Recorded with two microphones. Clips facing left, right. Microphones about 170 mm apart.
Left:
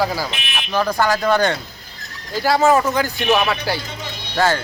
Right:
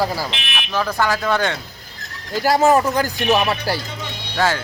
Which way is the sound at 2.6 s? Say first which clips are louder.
Even; centre (ahead or behind).